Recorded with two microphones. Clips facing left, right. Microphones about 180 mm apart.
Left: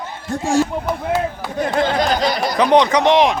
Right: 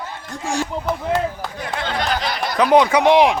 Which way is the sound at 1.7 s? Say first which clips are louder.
Left 5 dB; 40° left (ahead or behind).